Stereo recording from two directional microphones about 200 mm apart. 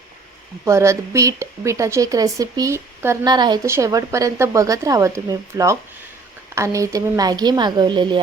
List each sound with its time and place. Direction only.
0.6 s a woman's voice: 15° right (ahead or behind)